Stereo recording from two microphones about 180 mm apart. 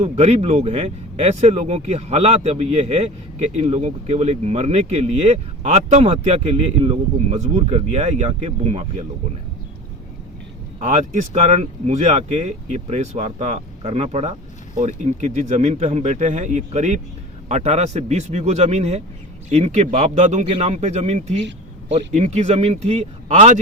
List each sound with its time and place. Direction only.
0.0 s speech: 35° right (ahead or behind)
10.8 s speech: 40° right (ahead or behind)